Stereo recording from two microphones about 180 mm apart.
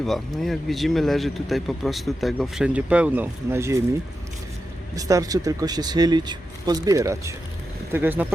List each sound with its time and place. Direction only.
0.0 s speech: centre (ahead or behind); by 3.8 s 15° right (ahead or behind)
4.9 s speech: 20° right (ahead or behind)